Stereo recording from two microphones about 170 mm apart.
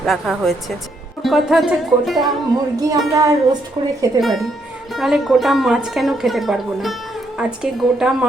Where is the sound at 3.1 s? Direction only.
20° right (ahead or behind).